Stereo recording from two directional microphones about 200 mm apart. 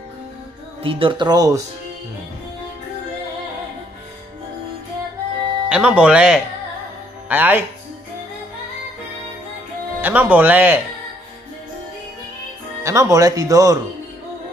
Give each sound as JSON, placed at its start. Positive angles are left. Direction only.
{"t": 0.8, "sound": "speech", "side_deg": -25}
{"t": 5.7, "sound": "speech", "side_deg": -5}
{"t": 10.0, "sound": "speech", "side_deg": -10}
{"t": 12.8, "sound": "speech", "side_deg": -15}